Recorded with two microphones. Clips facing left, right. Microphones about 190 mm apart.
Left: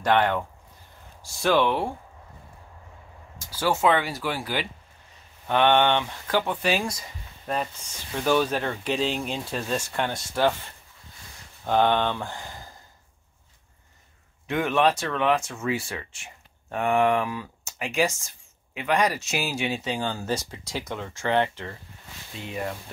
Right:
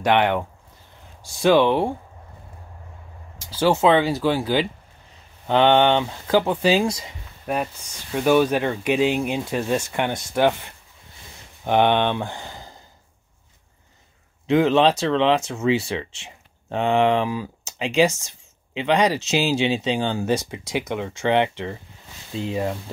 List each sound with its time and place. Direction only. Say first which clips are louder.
0.0 s speech: right 3 dB; 20° right (ahead or behind)
3.5 s speech: right 5 dB; 20° right (ahead or behind)
7.1 s a sound: right 4 dB; 10° right (ahead or behind)
8.2 s speech: right 5 dB; 10° right (ahead or behind)
14.5 s speech: right 6 dB; 25° right (ahead or behind)